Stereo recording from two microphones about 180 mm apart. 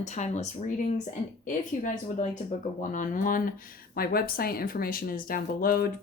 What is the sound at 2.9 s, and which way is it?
Speech, 45° left (ahead or behind).